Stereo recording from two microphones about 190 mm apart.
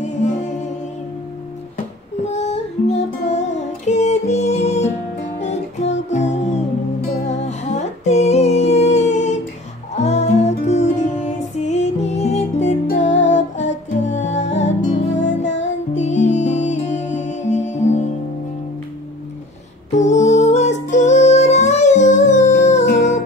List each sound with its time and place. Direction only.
0.0 s music: 40° left (ahead or behind)
2.2 s music: 35° left (ahead or behind)
15.9 s music: 40° left (ahead or behind)
19.9 s music: 40° left (ahead or behind)